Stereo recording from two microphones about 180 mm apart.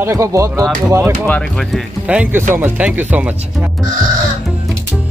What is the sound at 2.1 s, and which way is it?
Speech, 5° right (ahead or behind).